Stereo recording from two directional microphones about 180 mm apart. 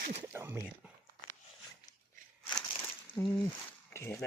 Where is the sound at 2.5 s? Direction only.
10° left (ahead or behind).